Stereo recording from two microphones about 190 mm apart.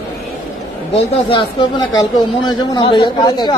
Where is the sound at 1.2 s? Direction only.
25° left (ahead or behind).